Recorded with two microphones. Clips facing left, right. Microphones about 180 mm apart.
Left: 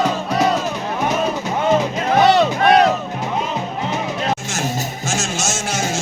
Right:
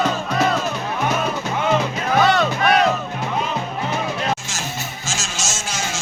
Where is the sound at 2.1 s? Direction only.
25° left (ahead or behind).